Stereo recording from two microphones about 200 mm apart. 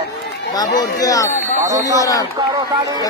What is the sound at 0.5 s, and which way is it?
Speech, 20° left (ahead or behind).